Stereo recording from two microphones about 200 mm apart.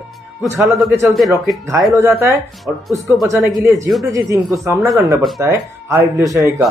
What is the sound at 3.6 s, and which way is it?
Speech, 15° right (ahead or behind).